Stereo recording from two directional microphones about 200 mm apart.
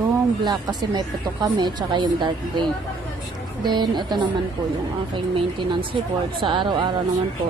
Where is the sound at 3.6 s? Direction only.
20° right (ahead or behind).